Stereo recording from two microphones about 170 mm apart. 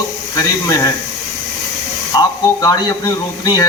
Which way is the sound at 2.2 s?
25° left (ahead or behind).